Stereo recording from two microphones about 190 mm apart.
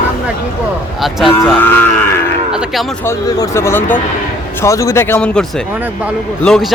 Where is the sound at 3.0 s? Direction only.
15° left (ahead or behind).